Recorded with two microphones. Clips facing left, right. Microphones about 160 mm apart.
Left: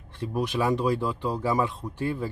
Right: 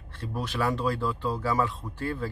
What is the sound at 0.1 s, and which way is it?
Speech, 15° left (ahead or behind).